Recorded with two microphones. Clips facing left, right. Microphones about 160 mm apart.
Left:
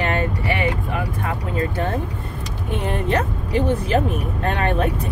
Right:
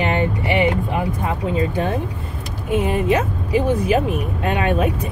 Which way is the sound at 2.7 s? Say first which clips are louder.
Right 4 dB; 10° right (ahead or behind).